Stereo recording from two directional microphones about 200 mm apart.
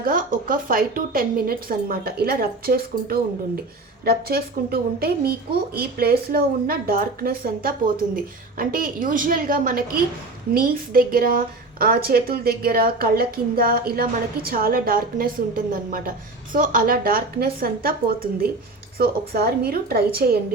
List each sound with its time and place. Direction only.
0.0 s a woman's voice: 45° right (ahead or behind)